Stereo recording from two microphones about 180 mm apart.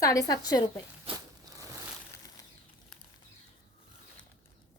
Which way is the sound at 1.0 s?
20° right (ahead or behind).